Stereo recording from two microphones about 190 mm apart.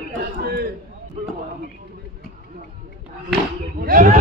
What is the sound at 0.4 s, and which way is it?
Chatter, 55° right (ahead or behind).